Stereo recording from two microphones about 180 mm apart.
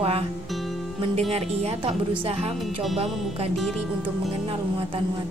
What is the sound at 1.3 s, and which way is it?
Speech, 35° right (ahead or behind).